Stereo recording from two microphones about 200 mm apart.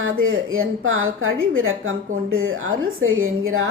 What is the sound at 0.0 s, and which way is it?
A woman's voice, 90° right.